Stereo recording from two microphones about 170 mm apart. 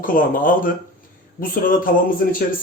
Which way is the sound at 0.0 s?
55° left (ahead or behind).